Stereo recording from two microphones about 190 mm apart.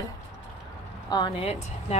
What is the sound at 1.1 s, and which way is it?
Speech, 25° left (ahead or behind).